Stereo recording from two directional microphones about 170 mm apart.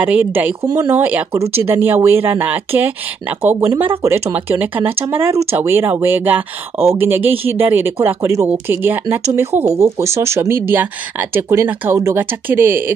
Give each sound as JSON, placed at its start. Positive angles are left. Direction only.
{"t": 0.0, "sound": "speech", "side_deg": -10}